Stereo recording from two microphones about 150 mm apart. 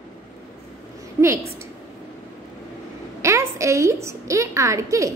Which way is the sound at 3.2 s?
20° right (ahead or behind).